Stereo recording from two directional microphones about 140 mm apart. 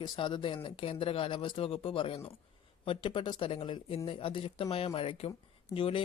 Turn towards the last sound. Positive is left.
turn(degrees=40)  # may be behind; listen again after turning